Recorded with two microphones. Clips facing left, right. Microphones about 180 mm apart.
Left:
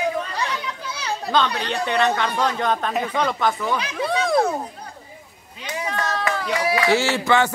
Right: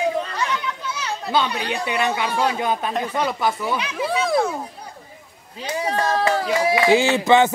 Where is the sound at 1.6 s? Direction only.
10° right (ahead or behind).